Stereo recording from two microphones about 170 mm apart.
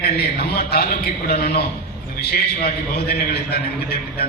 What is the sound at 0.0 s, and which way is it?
A man's voice, 70° left (ahead or behind).